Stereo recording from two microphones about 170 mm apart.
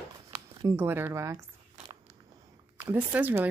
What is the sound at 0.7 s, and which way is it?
Speech, 10° right (ahead or behind).